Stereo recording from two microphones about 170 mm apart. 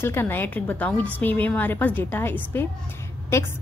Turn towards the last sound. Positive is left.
turn(degrees=15)  # may be behind; listen again after turning